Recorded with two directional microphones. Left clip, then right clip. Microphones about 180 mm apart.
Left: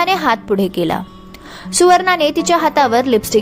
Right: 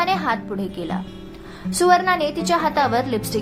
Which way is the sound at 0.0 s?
35° left (ahead or behind).